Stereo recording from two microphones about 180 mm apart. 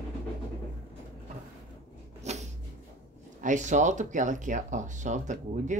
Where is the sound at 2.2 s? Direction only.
40° right (ahead or behind).